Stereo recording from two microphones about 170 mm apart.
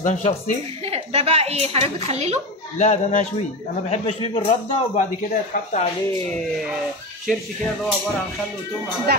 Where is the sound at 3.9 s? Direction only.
35° left (ahead or behind).